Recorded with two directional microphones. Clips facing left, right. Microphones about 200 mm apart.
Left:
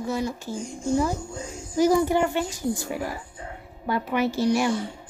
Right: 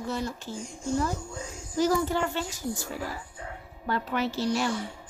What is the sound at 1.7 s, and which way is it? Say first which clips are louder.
Speech: left 5 dB; 15° left (ahead or behind).